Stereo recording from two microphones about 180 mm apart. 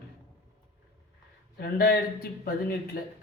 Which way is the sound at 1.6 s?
60° left (ahead or behind).